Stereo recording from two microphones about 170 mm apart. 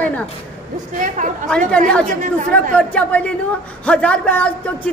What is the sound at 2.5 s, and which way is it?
A man's voice, 5° left (ahead or behind).